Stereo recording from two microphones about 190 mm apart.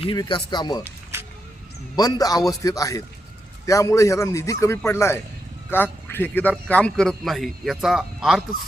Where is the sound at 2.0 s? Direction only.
20° left (ahead or behind).